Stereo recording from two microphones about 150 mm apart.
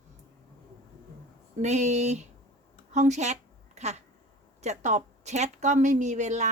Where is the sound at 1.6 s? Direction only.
50° right (ahead or behind).